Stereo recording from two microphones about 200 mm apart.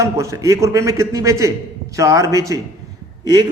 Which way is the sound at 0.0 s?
15° right (ahead or behind).